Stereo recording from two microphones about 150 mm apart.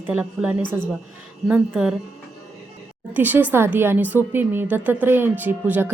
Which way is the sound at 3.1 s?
10° right (ahead or behind).